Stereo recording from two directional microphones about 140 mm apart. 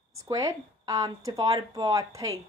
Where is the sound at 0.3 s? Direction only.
25° right (ahead or behind).